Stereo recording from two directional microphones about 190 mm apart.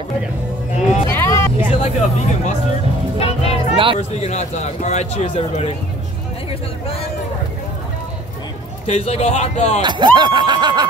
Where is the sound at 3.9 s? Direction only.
35° left (ahead or behind).